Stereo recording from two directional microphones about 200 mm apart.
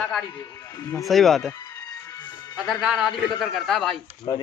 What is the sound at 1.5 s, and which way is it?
Music, 15° left (ahead or behind).